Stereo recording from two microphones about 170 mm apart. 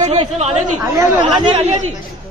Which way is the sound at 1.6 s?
40° right (ahead or behind).